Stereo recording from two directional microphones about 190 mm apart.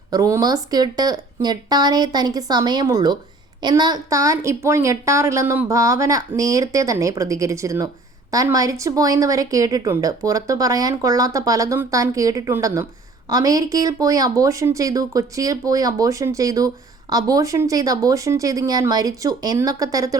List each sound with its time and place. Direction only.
0.1 s speech: 15° right (ahead or behind)